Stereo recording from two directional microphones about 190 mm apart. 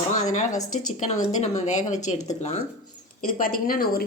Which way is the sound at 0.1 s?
40° left (ahead or behind).